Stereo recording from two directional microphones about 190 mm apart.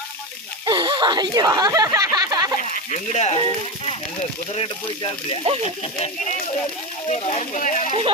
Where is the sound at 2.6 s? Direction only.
40° left (ahead or behind).